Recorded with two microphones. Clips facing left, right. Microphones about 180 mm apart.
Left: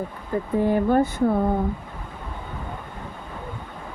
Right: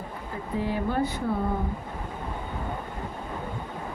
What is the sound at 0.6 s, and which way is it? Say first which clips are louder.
Speech: left 8 dB; 50° left (ahead or behind).